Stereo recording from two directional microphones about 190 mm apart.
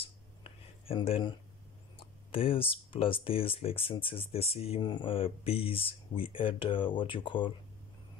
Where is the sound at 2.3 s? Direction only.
30° left (ahead or behind).